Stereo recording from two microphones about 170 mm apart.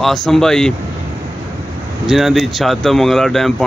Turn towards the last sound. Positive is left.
turn(degrees=0)  # may be behind; listen again after turning